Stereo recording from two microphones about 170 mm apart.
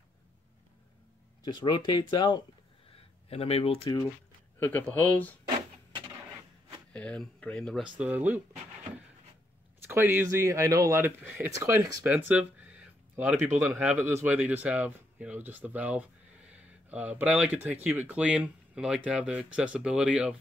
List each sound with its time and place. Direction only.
1.4 s speech: 25° left (ahead or behind)
4.6 s speech: 10° left (ahead or behind)
6.9 s speech: 5° left (ahead or behind)
8.0 s speech: 10° right (ahead or behind)
9.8 s speech: 15° right (ahead or behind)